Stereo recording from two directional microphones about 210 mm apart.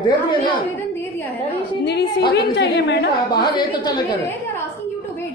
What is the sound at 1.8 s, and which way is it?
A woman's voice, 50° left (ahead or behind).